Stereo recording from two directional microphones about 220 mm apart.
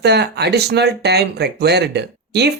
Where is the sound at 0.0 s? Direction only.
50° right (ahead or behind).